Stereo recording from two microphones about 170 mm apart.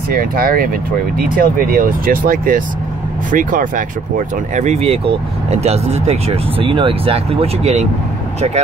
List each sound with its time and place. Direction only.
0.1 s speech: 55° right (ahead or behind)
4.6 s speech: 40° right (ahead or behind)